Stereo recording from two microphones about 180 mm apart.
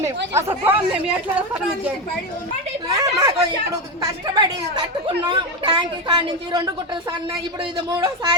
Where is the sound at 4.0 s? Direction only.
25° right (ahead or behind).